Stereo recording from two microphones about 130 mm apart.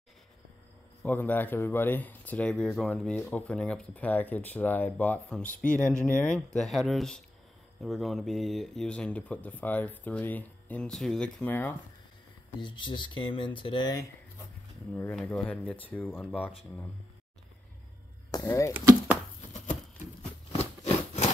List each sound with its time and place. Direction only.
1.0 s speech: 15° left (ahead or behind)
11.4 s speech: 15° left (ahead or behind)
12.5 s speech: 40° left (ahead or behind)
15.0 s speech: 5° left (ahead or behind)
18.3 s speech: 25° left (ahead or behind)
19.5 s a sound: 70° left (ahead or behind)